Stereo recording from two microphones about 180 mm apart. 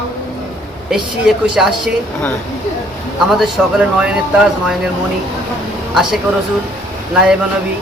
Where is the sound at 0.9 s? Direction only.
Centre (ahead or behind).